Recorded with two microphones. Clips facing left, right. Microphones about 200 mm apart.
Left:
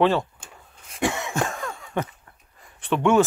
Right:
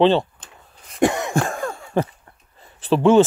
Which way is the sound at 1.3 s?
30° right (ahead or behind).